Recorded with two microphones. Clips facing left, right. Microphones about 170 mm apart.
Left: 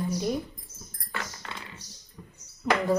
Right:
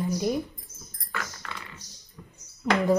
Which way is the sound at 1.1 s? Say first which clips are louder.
Right 1 dB; 25° left (ahead or behind).